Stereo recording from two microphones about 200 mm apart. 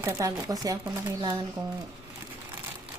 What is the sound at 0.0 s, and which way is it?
Speech, 15° right (ahead or behind).